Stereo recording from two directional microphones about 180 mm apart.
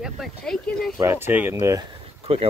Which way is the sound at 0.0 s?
Centre (ahead or behind).